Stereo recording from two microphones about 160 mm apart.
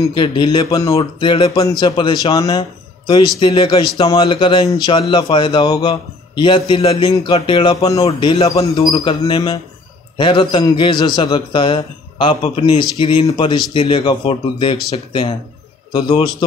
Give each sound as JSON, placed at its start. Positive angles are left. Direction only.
{"t": 0.0, "sound": "a man's voice", "side_deg": 30}
{"t": 0.9, "sound": "a man's voice", "side_deg": 35}
{"t": 7.7, "sound": "a man's voice", "side_deg": 20}
{"t": 8.0, "sound": "a man's voice", "side_deg": 35}
{"t": 15.9, "sound": "a man's voice", "side_deg": 35}